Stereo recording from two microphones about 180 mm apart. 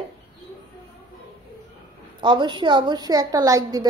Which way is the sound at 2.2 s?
25° right (ahead or behind).